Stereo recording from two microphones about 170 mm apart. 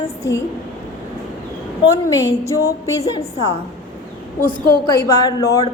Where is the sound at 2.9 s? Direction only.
20° left (ahead or behind).